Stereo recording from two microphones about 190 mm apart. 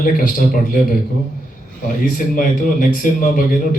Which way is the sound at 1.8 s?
45° left (ahead or behind).